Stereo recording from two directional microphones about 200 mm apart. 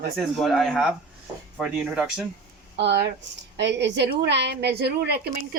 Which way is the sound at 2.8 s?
60° right (ahead or behind).